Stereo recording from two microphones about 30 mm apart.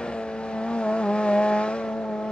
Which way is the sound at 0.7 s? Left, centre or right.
Left.